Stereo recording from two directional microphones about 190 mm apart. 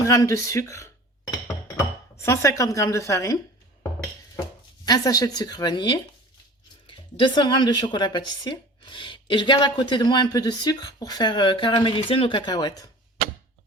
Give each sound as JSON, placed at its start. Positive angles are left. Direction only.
{"t": 0.0, "sound": "a woman's voice", "side_deg": 15}
{"t": 2.2, "sound": "a woman's voice", "side_deg": 15}
{"t": 4.9, "sound": "a woman's voice", "side_deg": 20}